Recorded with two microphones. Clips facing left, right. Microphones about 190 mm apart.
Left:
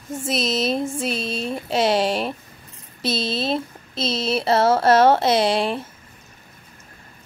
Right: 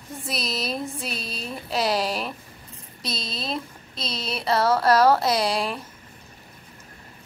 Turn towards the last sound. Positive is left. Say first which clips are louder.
# left 5 dB
turn(degrees=0)  # may be behind; listen again after turning